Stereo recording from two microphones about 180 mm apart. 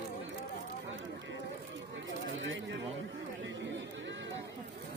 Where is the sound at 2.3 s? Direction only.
90° right.